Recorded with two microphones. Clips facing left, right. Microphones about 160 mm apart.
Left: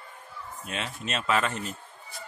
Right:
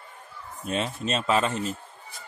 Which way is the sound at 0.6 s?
35° right (ahead or behind).